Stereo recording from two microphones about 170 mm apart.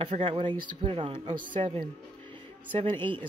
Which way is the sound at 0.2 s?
30° right (ahead or behind).